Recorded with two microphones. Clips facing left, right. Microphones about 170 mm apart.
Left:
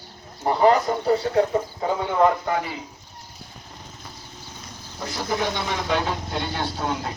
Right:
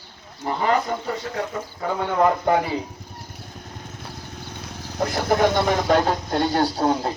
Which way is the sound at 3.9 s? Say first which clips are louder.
Right 5 dB; 65° right (ahead or behind).